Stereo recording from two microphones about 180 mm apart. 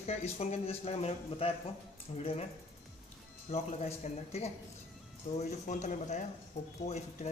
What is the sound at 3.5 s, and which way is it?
Speech, 35° left (ahead or behind).